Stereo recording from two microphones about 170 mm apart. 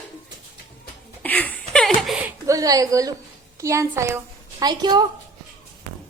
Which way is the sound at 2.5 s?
20° right (ahead or behind).